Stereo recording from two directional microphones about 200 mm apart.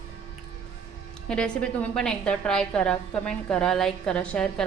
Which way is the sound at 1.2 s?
5° left (ahead or behind).